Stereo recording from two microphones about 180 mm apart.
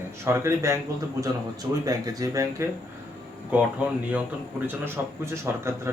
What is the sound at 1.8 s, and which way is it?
Speech, 20° right (ahead or behind).